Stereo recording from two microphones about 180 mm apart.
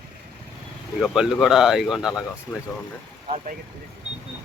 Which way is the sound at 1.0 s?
Centre (ahead or behind).